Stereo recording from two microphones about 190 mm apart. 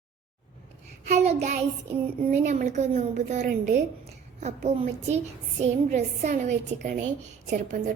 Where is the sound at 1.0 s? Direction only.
35° right (ahead or behind).